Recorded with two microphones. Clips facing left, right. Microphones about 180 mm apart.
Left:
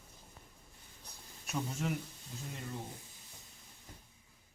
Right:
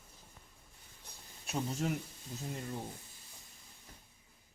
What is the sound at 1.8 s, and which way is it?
Speech, 40° right (ahead or behind).